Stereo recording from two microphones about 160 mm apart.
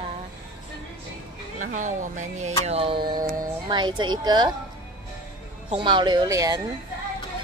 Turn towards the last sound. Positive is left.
turn(degrees=-20)  # may be behind; listen again after turning